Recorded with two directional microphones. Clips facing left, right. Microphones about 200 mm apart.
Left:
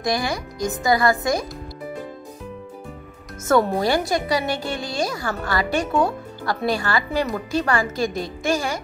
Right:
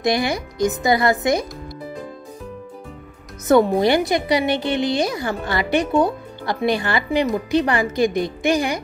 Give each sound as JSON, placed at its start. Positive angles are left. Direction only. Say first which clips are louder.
{"t": 0.0, "sound": "a woman's voice", "louder": "right 4 dB", "side_deg": -25}
{"t": 3.4, "sound": "a woman's voice", "louder": "right 4 dB", "side_deg": -20}